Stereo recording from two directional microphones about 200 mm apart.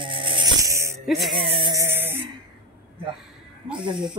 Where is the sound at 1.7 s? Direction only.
15° right (ahead or behind).